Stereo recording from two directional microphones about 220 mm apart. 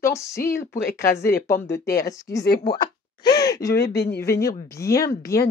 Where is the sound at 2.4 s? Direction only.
45° left (ahead or behind).